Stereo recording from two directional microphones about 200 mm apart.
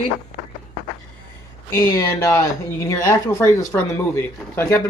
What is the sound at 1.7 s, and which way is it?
Speech, 15° left (ahead or behind).